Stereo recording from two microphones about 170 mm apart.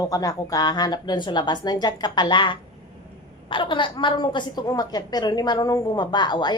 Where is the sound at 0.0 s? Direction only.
20° left (ahead or behind).